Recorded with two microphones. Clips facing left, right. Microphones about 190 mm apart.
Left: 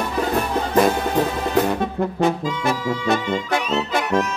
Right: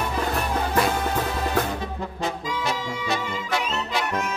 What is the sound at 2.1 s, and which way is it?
Brass instrument, 55° left (ahead or behind).